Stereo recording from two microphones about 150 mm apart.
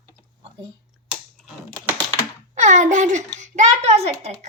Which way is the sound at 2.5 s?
50° right (ahead or behind).